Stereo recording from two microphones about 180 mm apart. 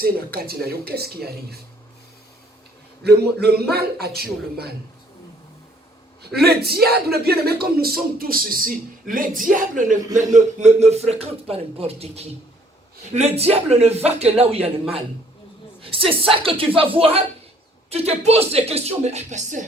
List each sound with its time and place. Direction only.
0.0 s a man's voice: 60° right (ahead or behind)
3.0 s a man's voice: 60° right (ahead or behind)
6.3 s a man's voice: 60° right (ahead or behind); by 15.0 s 35° right (ahead or behind)
16.0 s a man's voice: 30° right (ahead or behind)